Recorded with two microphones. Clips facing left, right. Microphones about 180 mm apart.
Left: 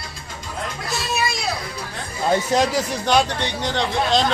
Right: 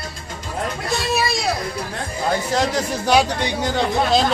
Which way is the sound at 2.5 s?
20° left (ahead or behind).